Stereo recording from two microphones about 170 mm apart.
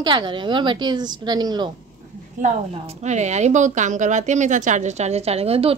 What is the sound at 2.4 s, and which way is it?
A woman's voice, 40° right (ahead or behind).